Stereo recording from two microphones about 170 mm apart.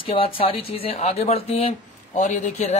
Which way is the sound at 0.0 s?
30° left (ahead or behind).